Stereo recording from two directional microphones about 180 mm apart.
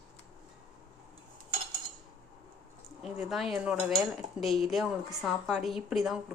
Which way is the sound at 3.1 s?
Centre (ahead or behind).